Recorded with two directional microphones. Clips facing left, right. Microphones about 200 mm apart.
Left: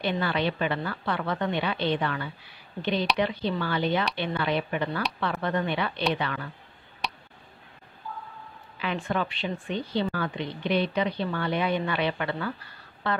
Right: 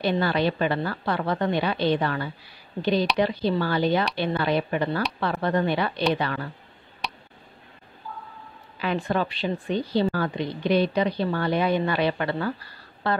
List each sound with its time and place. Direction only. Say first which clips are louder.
0.0 s a woman's voice: right 4 dB; 40° right (ahead or behind)
7.0 s tick: even; centre (ahead or behind)
8.7 s a woman's voice: right 4 dB; 35° right (ahead or behind)